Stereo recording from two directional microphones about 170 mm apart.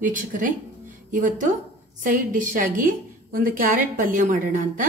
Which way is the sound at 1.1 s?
50° right (ahead or behind).